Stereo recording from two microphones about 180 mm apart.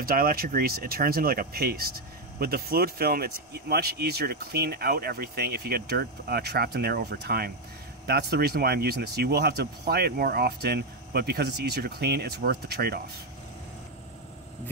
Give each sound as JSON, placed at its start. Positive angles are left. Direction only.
{"t": 0.0, "sound": "speech", "side_deg": -55}